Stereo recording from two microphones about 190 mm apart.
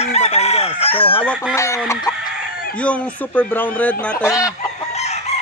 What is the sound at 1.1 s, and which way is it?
Speech, 10° left (ahead or behind).